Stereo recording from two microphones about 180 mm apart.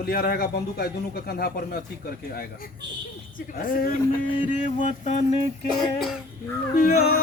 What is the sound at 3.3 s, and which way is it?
Music, 50° left (ahead or behind).